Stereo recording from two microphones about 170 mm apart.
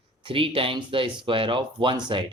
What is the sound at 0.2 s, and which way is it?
Speech, 30° right (ahead or behind).